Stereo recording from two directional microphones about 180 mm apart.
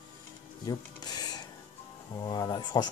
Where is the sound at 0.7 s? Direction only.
20° left (ahead or behind).